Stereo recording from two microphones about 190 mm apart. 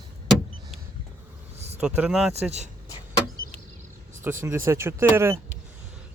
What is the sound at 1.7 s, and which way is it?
Speech, 10° right (ahead or behind).